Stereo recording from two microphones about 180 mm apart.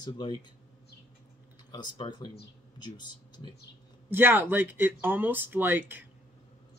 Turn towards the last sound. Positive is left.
turn(degrees=-10)  # may be behind; listen again after turning